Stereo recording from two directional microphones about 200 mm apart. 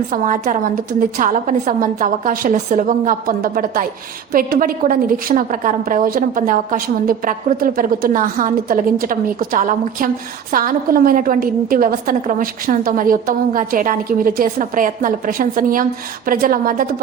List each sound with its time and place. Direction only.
0.1 s a woman's voice: 40° right (ahead or behind)